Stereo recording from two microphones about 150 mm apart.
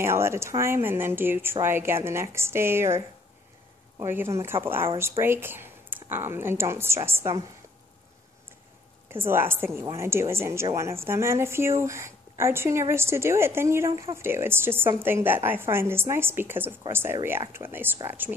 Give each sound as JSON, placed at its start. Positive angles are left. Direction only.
{"t": 0.0, "sound": "a woman's voice", "side_deg": -15}
{"t": 4.0, "sound": "a woman's voice", "side_deg": -15}
{"t": 9.1, "sound": "a woman's voice", "side_deg": -15}